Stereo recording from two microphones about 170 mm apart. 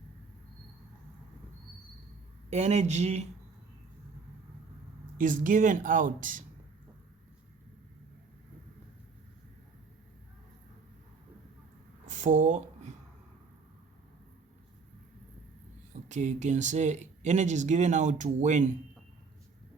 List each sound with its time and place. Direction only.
2.5 s speech: 40° right (ahead or behind)
5.1 s speech: 50° right (ahead or behind)
12.0 s a sound: 45° right (ahead or behind)
16.0 s speech: 45° right (ahead or behind)